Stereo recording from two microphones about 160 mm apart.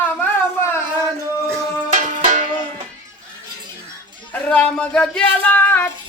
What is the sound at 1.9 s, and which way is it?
Music, 50° right (ahead or behind).